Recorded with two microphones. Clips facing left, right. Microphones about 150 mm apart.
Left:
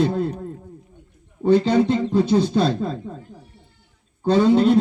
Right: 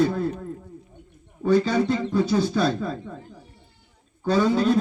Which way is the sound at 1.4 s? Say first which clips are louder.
Left 4 dB; 25° left (ahead or behind).